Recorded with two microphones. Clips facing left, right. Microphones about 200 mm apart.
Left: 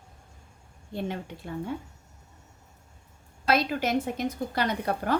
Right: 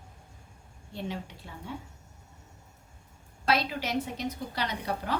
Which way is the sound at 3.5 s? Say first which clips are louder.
Left 4 dB; 50° left (ahead or behind).